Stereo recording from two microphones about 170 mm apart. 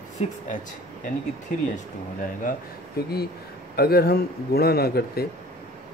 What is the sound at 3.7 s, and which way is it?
Speech, 65° left (ahead or behind).